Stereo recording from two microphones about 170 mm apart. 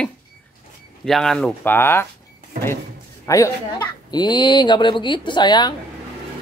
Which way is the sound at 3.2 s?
20° left (ahead or behind).